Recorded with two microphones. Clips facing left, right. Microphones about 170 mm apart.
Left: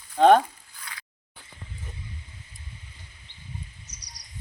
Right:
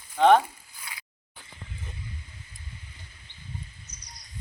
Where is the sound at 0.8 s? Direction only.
5° right (ahead or behind).